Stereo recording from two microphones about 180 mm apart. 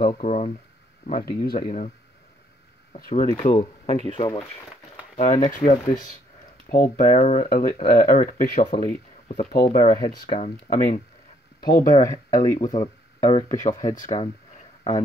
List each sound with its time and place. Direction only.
0.0 s speech: 35° left (ahead or behind)
1.0 s speech: 55° left (ahead or behind)
3.0 s speech: 50° left (ahead or behind)
3.4 s speech: 35° left (ahead or behind)
5.1 s speech: 40° left (ahead or behind)
8.8 s speech: 30° left (ahead or behind)
9.5 s speech: 55° left (ahead or behind)
10.0 s speech: 40° left (ahead or behind)
11.8 s speech: 20° left (ahead or behind)